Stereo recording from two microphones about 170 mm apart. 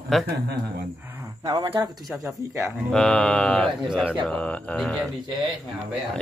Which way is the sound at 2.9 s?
5° left (ahead or behind).